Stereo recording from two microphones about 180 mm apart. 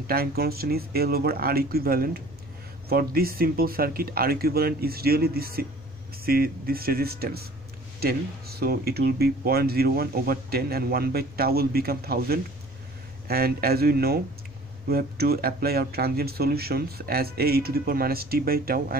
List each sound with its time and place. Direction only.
0.0 s speech: 55° right (ahead or behind)